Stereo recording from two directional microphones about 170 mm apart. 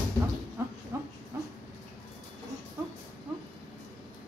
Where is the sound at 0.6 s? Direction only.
15° right (ahead or behind).